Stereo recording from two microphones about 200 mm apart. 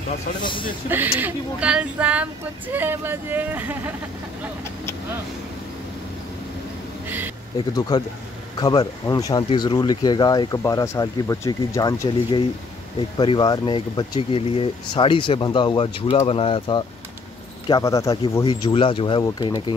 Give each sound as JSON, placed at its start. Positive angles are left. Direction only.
{"t": 0.4, "sound": "speech", "side_deg": 25}
{"t": 0.8, "sound": "speech", "side_deg": -10}
{"t": 7.1, "sound": "a sound", "side_deg": -10}
{"t": 7.5, "sound": "speech", "side_deg": 20}